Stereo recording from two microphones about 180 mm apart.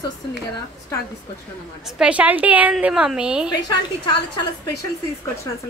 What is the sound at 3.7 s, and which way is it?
A woman's voice, 25° left (ahead or behind).